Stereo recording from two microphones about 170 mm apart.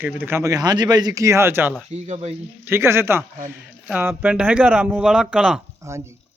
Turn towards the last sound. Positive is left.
turn(degrees=-15)  # may be behind; listen again after turning